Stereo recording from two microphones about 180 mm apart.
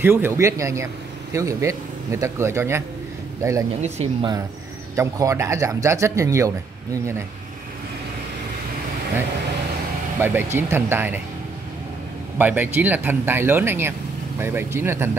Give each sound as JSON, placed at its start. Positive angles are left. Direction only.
{"t": 0.0, "sound": "speech", "side_deg": -10}
{"t": 4.9, "sound": "speech", "side_deg": -15}
{"t": 10.2, "sound": "speech", "side_deg": -10}
{"t": 12.4, "sound": "speech", "side_deg": -10}